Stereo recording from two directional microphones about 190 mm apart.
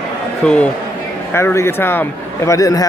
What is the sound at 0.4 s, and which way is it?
A man's voice, 5° left (ahead or behind).